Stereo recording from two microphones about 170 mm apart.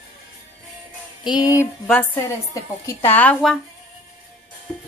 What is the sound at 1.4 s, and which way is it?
A woman's voice, 15° left (ahead or behind).